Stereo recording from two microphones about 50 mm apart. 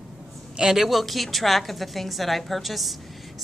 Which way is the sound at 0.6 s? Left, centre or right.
Centre.